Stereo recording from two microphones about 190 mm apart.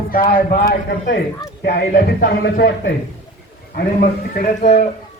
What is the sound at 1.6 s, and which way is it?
Speech, 40° left (ahead or behind).